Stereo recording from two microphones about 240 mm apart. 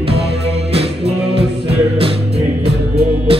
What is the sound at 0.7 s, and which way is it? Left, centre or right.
Music, right.